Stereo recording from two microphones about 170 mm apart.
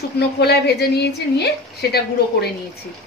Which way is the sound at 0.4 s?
75° left (ahead or behind).